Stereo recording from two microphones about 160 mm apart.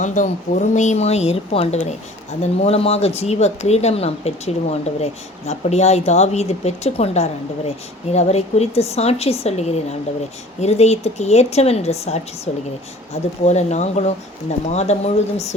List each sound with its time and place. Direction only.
0.0 s speech: 50° left (ahead or behind)
13.4 s speech: 45° left (ahead or behind)